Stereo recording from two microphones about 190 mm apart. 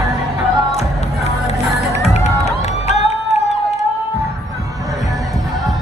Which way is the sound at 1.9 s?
35° left (ahead or behind).